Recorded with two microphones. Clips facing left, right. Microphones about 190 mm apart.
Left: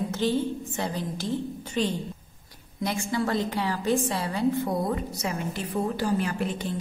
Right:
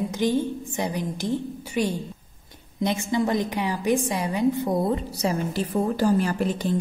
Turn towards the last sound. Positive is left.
turn(degrees=-40)  # may be behind; listen again after turning